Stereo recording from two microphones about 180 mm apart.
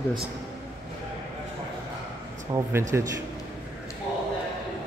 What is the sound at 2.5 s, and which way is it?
Speech, 15° right (ahead or behind).